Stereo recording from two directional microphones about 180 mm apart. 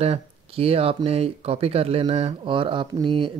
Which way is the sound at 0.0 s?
35° right (ahead or behind).